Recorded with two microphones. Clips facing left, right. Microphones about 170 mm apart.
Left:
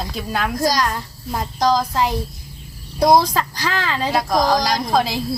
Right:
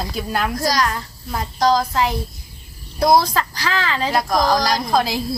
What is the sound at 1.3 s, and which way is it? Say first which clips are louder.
Speech: right 1 dB; 15° left (ahead or behind).